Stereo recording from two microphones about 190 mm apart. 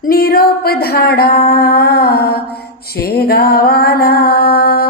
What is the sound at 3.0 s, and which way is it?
Music, 55° left (ahead or behind).